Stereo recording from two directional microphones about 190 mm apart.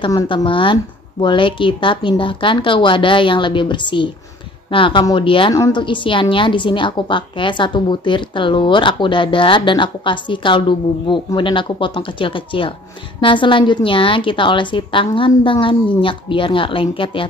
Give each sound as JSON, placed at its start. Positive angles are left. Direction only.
{"t": 0.0, "sound": "a woman's voice", "side_deg": 20}